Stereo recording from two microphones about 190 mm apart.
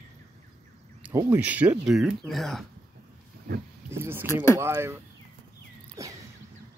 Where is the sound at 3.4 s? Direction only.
55° right (ahead or behind).